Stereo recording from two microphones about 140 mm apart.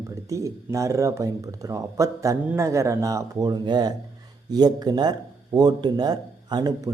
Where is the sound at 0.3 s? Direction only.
20° right (ahead or behind).